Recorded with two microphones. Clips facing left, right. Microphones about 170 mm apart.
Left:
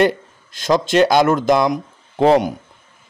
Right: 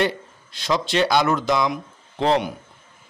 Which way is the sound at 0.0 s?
45° left (ahead or behind).